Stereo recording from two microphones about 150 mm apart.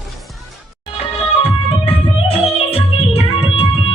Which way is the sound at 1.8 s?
40° left (ahead or behind).